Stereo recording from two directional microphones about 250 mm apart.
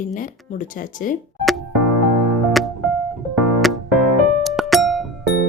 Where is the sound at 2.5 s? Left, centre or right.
Centre.